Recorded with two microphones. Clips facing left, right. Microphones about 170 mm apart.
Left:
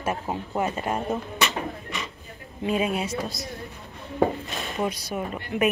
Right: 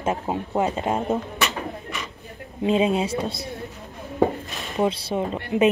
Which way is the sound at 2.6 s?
25° right (ahead or behind).